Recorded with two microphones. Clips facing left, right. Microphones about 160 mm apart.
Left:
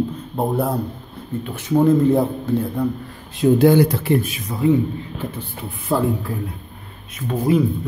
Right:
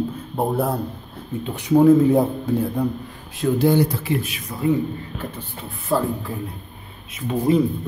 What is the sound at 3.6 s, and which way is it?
Speech, 90° left.